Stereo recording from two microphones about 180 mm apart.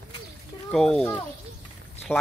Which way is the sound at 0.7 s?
5° left (ahead or behind).